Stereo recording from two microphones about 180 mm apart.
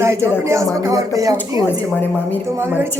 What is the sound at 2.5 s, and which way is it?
Speech, 15° right (ahead or behind).